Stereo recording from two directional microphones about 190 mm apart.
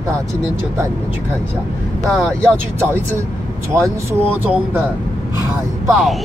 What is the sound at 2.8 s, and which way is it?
Speech, 15° right (ahead or behind).